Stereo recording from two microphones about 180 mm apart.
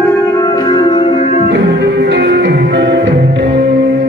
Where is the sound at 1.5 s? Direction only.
70° right (ahead or behind).